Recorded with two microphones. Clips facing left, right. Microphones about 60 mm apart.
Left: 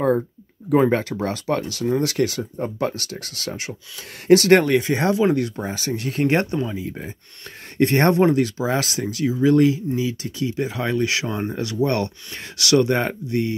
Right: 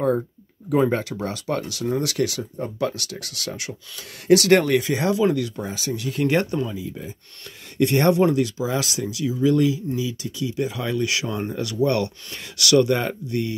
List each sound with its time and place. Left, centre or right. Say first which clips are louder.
0.7 s speech: left 3 dB; left
6.3 s speech: even; left
6.7 s speech: left 2 dB; left